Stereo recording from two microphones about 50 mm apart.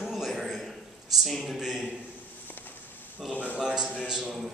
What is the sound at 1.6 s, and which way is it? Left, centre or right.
Speech, centre.